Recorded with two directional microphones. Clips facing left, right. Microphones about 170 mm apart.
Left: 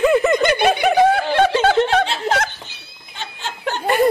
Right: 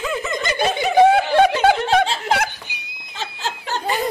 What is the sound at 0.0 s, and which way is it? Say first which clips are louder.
Giggle: left 10 dB; 60° left (ahead or behind).